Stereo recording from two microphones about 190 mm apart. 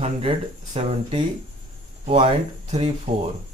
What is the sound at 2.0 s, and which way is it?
Speech, 30° right (ahead or behind).